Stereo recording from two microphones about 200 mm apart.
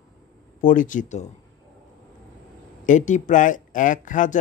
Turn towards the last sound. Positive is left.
turn(degrees=40)  # may be behind; listen again after turning